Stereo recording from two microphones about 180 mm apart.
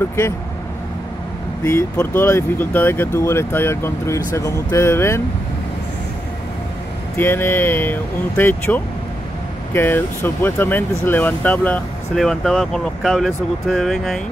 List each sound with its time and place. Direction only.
1.6 s speech: 15° left (ahead or behind)
7.2 s speech: 10° left (ahead or behind)